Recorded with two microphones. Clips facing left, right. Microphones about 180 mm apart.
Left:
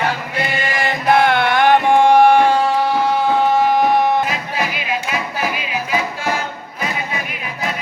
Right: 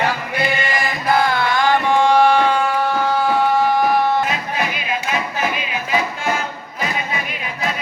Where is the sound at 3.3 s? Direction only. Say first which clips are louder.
Left 1 dB; 20° left (ahead or behind).